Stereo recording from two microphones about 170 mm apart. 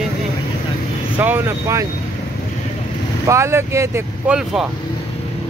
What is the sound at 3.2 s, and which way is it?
Speech, 15° right (ahead or behind).